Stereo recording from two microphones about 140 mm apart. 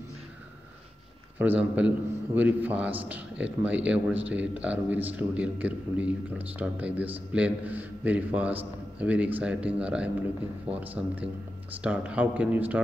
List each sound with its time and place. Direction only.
1.4 s a man's voice: 10° right (ahead or behind)